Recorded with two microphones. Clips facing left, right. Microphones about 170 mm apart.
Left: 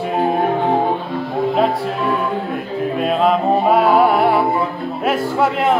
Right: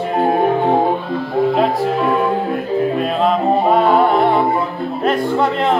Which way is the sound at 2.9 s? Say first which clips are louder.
Even; centre (ahead or behind).